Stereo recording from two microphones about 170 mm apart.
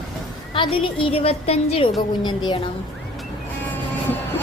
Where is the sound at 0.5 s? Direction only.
30° left (ahead or behind).